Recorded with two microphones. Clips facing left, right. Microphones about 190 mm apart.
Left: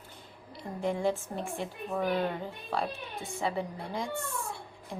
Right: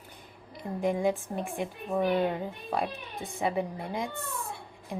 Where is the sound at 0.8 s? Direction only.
15° right (ahead or behind).